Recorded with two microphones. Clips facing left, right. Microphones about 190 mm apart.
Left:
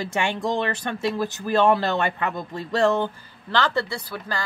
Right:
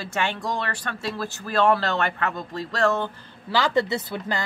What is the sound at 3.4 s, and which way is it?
Speech, 10° right (ahead or behind).